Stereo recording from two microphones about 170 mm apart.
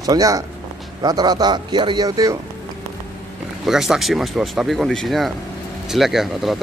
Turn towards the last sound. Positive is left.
turn(degrees=0)  # may be behind; listen again after turning